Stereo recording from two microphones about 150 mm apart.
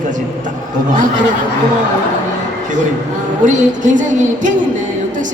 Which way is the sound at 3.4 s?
55° right (ahead or behind).